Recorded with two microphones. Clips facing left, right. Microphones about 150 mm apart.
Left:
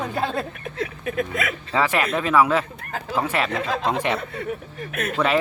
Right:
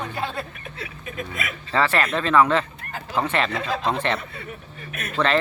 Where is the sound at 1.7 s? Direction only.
10° left (ahead or behind).